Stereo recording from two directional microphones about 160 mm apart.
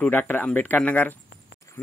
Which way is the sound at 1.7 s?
20° left (ahead or behind).